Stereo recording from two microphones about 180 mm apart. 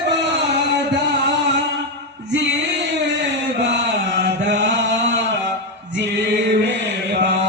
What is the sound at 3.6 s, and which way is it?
Chant, 80° right.